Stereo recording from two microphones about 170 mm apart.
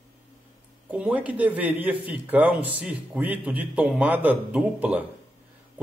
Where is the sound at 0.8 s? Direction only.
5° right (ahead or behind).